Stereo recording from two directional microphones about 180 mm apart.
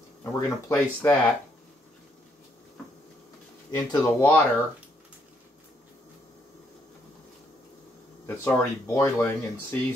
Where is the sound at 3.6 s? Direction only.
20° left (ahead or behind).